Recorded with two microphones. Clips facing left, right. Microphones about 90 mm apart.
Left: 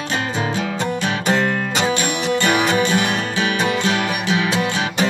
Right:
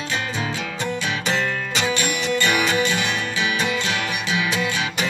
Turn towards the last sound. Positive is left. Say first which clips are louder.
# left 4 dB
turn(degrees=40)  # may be behind; listen again after turning